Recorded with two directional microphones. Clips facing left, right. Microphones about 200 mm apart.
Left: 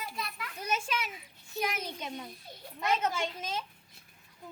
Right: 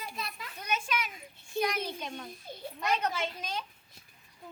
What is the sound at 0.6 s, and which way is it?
Speech, 30° left (ahead or behind).